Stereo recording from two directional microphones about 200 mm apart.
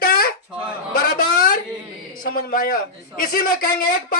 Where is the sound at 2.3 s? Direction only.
45° left (ahead or behind).